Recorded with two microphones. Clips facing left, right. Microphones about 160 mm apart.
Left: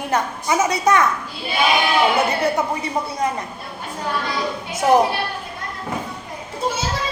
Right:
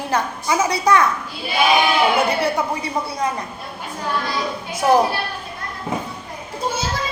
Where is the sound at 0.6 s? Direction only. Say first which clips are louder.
Even; 20° left (ahead or behind).